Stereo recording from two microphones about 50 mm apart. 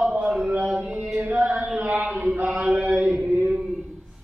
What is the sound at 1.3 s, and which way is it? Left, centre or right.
Chant, right.